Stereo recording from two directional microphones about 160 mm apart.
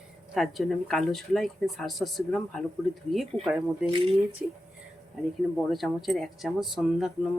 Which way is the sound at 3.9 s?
35° right (ahead or behind).